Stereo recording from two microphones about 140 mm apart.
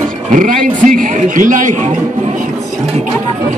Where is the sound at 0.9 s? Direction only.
75° right (ahead or behind).